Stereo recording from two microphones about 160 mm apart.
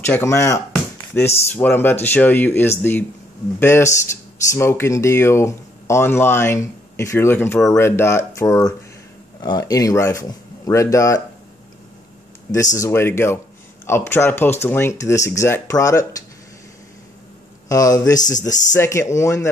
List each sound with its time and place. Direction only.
0.0 s speech: 15° left (ahead or behind)
0.7 s chop: 15° left (ahead or behind)
1.5 s speech: 10° left (ahead or behind)
12.7 s speech: 15° left (ahead or behind)
17.6 s speech: 20° left (ahead or behind)